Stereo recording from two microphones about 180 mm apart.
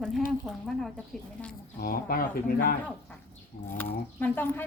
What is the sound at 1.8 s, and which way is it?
Speech, 55° left (ahead or behind).